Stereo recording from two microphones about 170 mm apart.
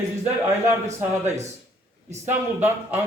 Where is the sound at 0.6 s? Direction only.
15° right (ahead or behind).